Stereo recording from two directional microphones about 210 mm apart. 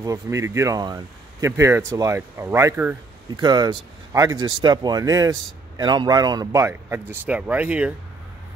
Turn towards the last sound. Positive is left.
turn(degrees=-5)  # may be behind; listen again after turning